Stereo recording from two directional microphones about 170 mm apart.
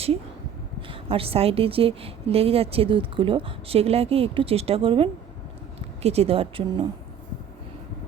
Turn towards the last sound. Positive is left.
turn(degrees=-30)  # may be behind; listen again after turning